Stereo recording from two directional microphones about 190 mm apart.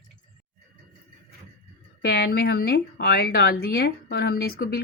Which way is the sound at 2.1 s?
60° left (ahead or behind).